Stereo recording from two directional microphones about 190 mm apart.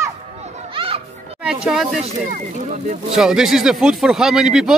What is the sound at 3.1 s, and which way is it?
Speech, centre (ahead or behind).